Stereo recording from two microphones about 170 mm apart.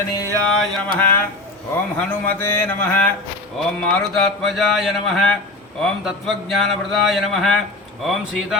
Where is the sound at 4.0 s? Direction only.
Centre (ahead or behind).